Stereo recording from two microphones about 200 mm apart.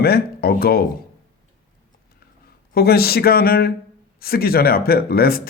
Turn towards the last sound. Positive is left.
turn(degrees=50)  # may be behind; listen again after turning